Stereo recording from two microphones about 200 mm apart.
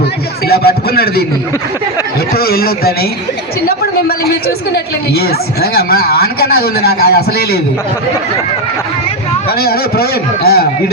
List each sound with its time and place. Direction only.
0.4 s speech: 50° left (ahead or behind)
2.3 s speech: 50° left (ahead or behind)
4.2 s speech: 50° left (ahead or behind)
9.5 s speech: 50° left (ahead or behind)